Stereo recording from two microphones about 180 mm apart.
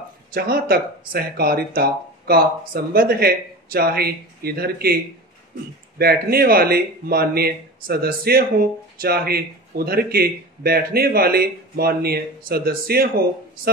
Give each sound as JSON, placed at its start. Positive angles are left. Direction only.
{"t": 0.3, "sound": "speech", "side_deg": -55}
{"t": 5.9, "sound": "speech", "side_deg": -60}